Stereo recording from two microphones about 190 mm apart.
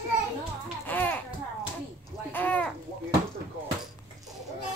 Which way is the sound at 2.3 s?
10° left (ahead or behind).